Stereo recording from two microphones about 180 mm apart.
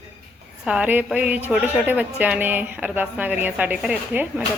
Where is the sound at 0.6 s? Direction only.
5° right (ahead or behind).